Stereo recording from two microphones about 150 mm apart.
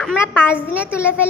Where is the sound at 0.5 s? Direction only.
10° right (ahead or behind).